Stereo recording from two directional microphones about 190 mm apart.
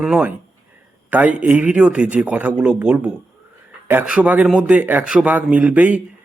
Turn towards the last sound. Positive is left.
turn(degrees=-10)  # may be behind; listen again after turning